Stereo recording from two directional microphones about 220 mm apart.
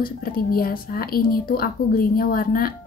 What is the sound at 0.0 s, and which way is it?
Speech, 45° left (ahead or behind).